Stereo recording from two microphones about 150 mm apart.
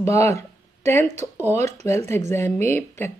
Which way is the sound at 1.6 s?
50° right (ahead or behind).